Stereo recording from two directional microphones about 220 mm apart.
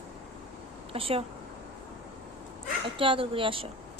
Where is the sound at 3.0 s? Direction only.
25° right (ahead or behind).